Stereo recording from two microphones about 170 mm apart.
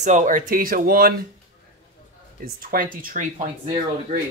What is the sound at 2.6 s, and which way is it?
Speech, 55° right (ahead or behind).